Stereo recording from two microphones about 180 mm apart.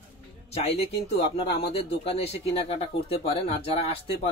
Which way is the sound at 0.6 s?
35° left (ahead or behind).